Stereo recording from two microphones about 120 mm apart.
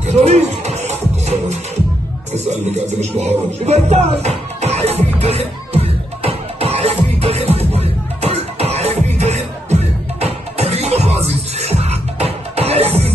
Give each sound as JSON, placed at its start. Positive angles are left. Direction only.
{"t": 0.0, "sound": "music", "side_deg": -65}